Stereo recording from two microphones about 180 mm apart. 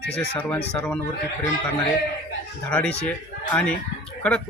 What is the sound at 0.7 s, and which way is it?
Speech, 5° left (ahead or behind).